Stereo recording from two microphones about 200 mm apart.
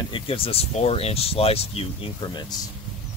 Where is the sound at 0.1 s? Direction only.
30° left (ahead or behind).